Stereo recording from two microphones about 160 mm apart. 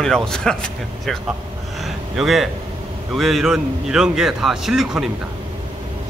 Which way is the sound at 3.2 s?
Centre (ahead or behind).